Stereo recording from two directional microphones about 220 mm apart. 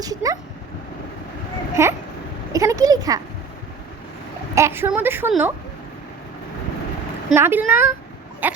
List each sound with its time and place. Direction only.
0.0 s a woman's voice: 15° right (ahead or behind)
1.7 s a woman's voice: 10° right (ahead or behind)
4.5 s a woman's voice: 10° right (ahead or behind)
7.3 s a woman's voice: 10° right (ahead or behind)